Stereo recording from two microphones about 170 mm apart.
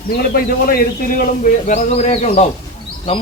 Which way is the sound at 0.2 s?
60° left (ahead or behind).